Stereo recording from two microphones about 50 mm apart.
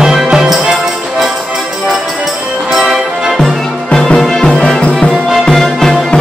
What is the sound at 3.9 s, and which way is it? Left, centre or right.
Music, centre.